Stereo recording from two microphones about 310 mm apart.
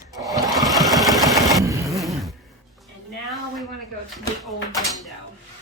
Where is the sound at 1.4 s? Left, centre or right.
Centre.